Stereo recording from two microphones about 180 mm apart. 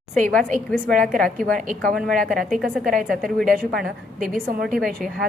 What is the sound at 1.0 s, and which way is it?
Speech, centre (ahead or behind).